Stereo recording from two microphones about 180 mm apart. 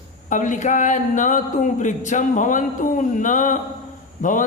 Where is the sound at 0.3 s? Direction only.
45° left (ahead or behind).